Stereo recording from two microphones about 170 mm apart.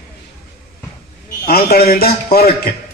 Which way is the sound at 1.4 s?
60° left (ahead or behind).